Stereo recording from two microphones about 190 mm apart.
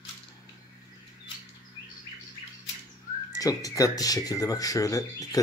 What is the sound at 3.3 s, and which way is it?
Speech, 20° left (ahead or behind).